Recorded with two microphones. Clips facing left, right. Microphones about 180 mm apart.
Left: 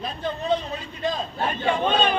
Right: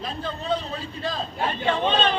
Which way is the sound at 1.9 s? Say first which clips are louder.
Left 2 dB; 10° left (ahead or behind).